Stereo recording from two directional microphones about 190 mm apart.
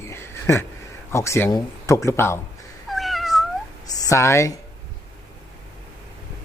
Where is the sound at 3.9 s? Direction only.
15° left (ahead or behind).